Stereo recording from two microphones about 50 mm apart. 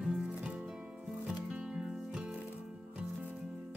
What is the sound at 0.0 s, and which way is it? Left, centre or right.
Music, centre.